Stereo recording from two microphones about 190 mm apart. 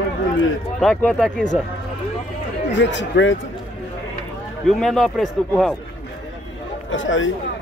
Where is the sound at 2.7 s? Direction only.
70° left (ahead or behind).